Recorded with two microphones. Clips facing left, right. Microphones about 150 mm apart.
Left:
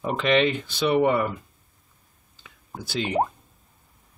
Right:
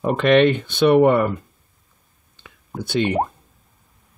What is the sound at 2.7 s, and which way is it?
Speech, centre (ahead or behind).